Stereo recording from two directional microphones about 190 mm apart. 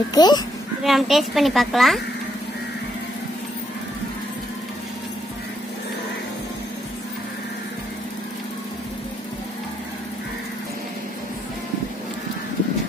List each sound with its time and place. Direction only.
0.1 s a child's voice: 20° left (ahead or behind)
0.8 s speech: centre (ahead or behind)